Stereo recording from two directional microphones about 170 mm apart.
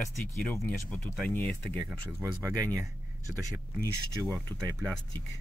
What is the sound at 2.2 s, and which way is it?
Speech, 20° right (ahead or behind).